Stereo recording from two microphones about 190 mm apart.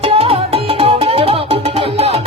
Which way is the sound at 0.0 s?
30° right (ahead or behind).